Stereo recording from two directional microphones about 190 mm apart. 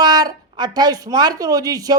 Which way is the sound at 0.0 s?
20° right (ahead or behind).